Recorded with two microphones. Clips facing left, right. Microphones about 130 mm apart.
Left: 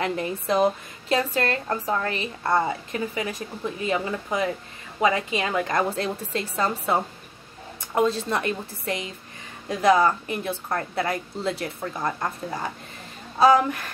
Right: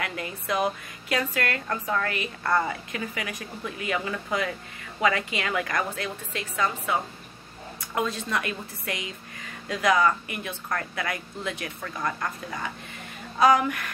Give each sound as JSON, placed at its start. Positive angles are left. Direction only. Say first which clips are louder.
{"t": 0.0, "sound": "speech", "louder": "left 6 dB", "side_deg": 30}